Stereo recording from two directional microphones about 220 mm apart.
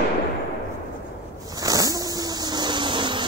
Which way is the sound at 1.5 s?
15° right (ahead or behind).